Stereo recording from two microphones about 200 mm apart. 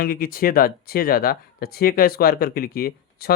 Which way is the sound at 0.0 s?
50° left (ahead or behind).